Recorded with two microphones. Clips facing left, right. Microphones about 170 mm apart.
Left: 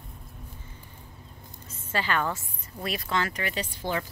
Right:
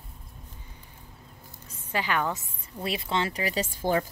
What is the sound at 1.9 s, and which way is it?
A woman's voice, 15° right (ahead or behind).